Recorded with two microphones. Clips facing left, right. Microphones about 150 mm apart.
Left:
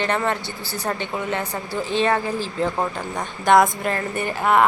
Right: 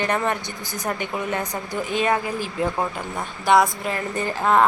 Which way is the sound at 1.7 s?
15° right (ahead or behind).